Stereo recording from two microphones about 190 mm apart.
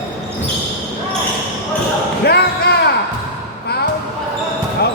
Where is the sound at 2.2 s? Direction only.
55° left (ahead or behind).